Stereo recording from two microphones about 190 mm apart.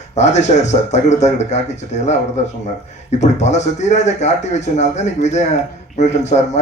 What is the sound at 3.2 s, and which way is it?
Speech, 35° left (ahead or behind).